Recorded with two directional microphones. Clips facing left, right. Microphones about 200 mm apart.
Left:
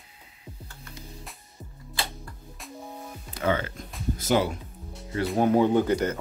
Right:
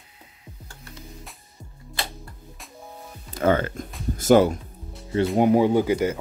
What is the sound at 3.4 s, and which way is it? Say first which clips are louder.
Speech: right 6 dB; 50° right (ahead or behind).